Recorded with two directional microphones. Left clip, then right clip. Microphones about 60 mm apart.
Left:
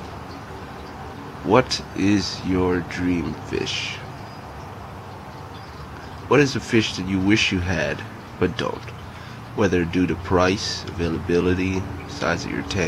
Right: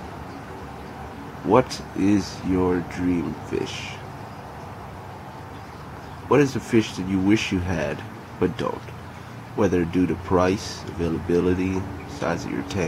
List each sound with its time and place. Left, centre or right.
1.5 s speech: left
6.2 s speech: left